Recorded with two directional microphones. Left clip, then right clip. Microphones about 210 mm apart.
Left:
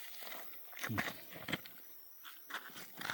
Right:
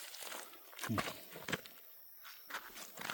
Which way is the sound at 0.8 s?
5° right (ahead or behind).